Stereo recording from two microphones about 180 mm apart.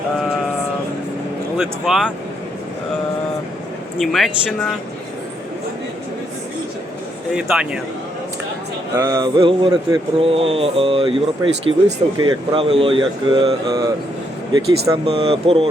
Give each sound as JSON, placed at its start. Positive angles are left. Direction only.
{"t": 1.5, "sound": "speech", "side_deg": 0}
{"t": 4.0, "sound": "speech", "side_deg": 0}
{"t": 7.3, "sound": "speech", "side_deg": -5}
{"t": 9.0, "sound": "speech", "side_deg": -20}
{"t": 15.0, "sound": "speech", "side_deg": -35}